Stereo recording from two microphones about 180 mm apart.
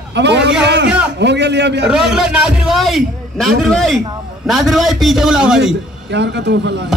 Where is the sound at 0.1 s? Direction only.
70° right (ahead or behind).